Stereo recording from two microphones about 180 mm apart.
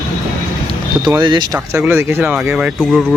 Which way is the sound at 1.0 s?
25° right (ahead or behind).